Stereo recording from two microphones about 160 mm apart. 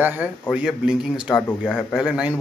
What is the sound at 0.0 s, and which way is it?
Speech, 10° right (ahead or behind).